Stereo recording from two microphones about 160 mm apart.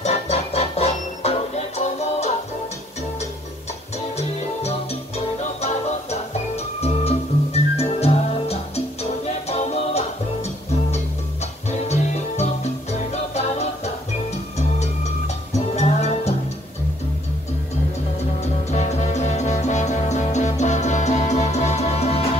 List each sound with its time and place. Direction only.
0.0 s music: 45° left (ahead or behind)
4.2 s music: 40° left (ahead or behind)
11.7 s music: 45° left (ahead or behind)
15.7 s music: 45° left (ahead or behind)
18.4 s music: 45° left (ahead or behind)